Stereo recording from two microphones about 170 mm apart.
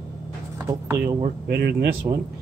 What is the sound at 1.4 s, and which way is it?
Speech, 65° right (ahead or behind).